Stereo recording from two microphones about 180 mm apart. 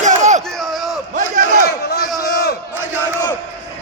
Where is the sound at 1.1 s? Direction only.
45° right (ahead or behind).